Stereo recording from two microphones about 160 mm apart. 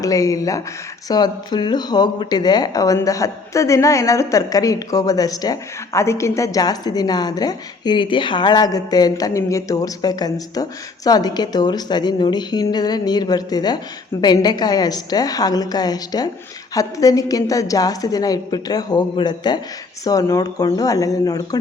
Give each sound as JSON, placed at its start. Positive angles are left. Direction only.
{"t": 0.0, "sound": "speech", "side_deg": 20}